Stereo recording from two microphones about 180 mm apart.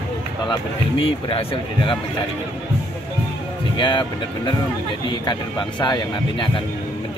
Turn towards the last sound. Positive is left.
turn(degrees=25)  # may be behind; listen again after turning